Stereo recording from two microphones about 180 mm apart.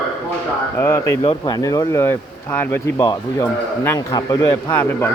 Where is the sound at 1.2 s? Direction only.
25° left (ahead or behind).